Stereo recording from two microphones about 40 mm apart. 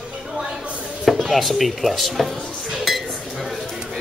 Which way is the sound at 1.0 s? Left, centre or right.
Centre.